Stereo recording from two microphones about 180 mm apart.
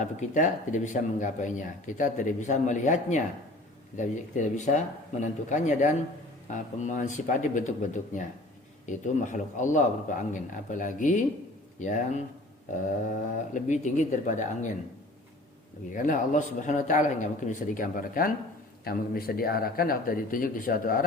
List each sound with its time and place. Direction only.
0.0 s speech: 45° left (ahead or behind)
13.5 s speech: 40° left (ahead or behind)
15.9 s speech: 45° left (ahead or behind)